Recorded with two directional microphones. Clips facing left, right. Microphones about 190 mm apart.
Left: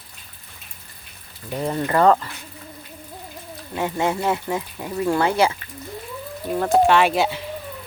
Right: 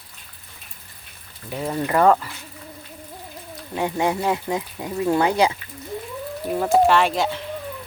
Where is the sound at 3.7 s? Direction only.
15° right (ahead or behind).